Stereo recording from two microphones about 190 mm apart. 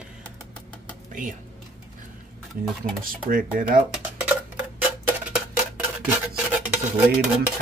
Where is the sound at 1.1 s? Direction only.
45° right (ahead or behind).